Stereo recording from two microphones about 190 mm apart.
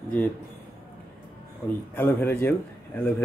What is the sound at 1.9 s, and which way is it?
Speech, 10° left (ahead or behind).